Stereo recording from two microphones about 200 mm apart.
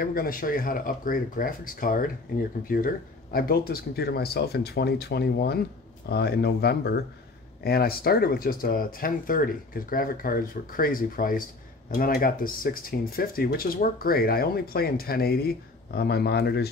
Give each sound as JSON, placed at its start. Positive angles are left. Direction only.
{"t": 0.0, "sound": "speech", "side_deg": 45}